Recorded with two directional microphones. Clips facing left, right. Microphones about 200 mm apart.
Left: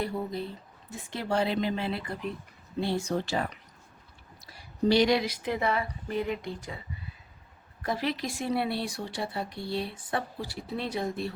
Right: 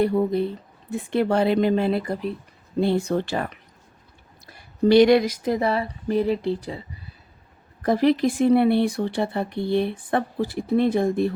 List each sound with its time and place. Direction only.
0.0 s speech: 60° right (ahead or behind); by 2.3 s 45° right (ahead or behind)
2.8 s speech: 60° right (ahead or behind); by 6.8 s 30° right (ahead or behind)
7.8 s a woman's voice: 45° right (ahead or behind)
8.5 s speech: 55° right (ahead or behind)